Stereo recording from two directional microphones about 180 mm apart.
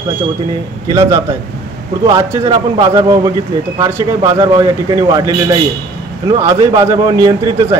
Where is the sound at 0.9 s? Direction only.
15° right (ahead or behind).